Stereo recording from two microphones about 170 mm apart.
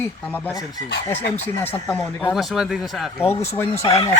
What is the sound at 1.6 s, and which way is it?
Speech, 10° left (ahead or behind).